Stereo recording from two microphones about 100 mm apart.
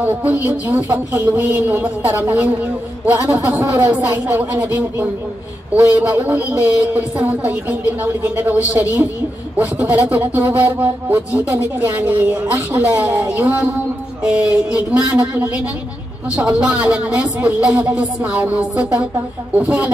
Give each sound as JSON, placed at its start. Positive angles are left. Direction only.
{"t": 0.0, "sound": "speech", "side_deg": -15}